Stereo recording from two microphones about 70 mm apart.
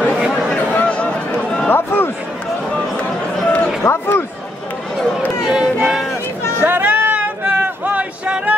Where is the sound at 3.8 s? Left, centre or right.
Left.